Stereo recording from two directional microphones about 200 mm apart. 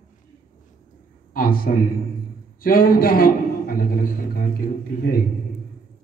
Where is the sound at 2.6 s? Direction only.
45° left (ahead or behind).